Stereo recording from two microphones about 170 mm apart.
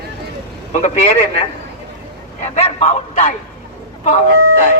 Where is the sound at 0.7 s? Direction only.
45° left (ahead or behind).